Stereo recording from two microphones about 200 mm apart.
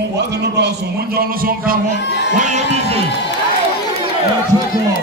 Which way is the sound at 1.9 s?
60° left (ahead or behind).